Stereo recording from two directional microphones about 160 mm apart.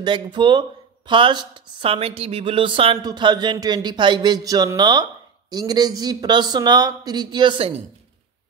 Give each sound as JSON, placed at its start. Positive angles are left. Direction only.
{"t": 0.0, "sound": "speech", "side_deg": -30}